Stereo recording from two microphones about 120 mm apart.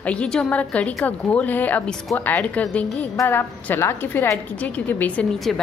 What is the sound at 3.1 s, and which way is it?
A woman's voice, 20° left (ahead or behind).